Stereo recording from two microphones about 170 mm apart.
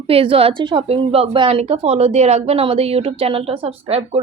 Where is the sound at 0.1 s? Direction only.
35° right (ahead or behind).